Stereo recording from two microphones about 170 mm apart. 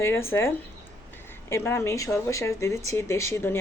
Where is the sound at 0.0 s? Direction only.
15° left (ahead or behind).